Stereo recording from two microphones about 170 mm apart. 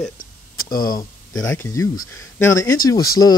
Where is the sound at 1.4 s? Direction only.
15° left (ahead or behind).